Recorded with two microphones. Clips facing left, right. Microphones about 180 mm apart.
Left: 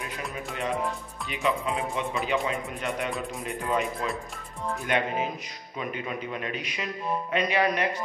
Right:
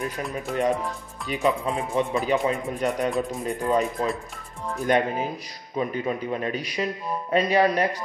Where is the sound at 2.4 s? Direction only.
40° right (ahead or behind).